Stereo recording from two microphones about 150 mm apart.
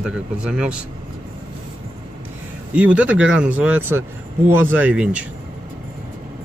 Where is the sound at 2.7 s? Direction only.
5° right (ahead or behind).